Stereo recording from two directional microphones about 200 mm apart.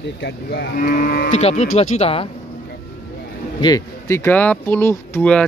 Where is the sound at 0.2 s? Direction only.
50° left (ahead or behind).